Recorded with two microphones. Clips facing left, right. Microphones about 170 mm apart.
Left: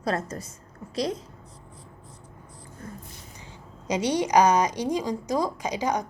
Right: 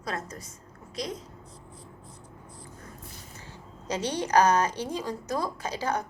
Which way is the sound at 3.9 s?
15° left (ahead or behind).